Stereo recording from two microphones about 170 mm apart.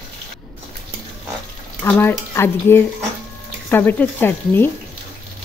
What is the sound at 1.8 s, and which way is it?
Speech, 10° left (ahead or behind).